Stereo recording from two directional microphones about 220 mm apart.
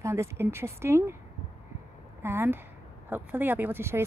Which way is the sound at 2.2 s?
10° right (ahead or behind).